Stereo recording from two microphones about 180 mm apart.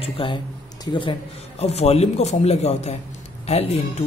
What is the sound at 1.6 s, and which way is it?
Speech, 35° left (ahead or behind).